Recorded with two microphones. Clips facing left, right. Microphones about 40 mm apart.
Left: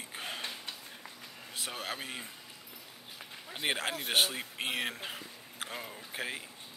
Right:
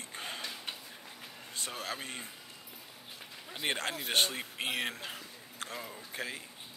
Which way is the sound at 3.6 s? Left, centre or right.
Centre.